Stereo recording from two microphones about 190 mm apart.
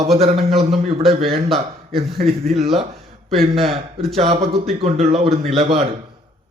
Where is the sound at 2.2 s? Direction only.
30° right (ahead or behind).